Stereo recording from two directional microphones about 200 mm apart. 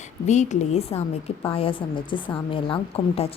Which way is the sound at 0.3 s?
35° left (ahead or behind).